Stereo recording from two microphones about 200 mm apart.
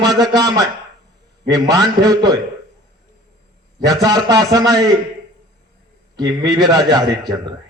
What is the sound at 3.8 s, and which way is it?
A man's voice, 20° right (ahead or behind).